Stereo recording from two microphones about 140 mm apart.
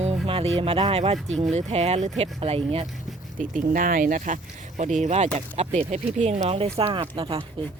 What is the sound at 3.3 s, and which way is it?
Speech, 70° right (ahead or behind).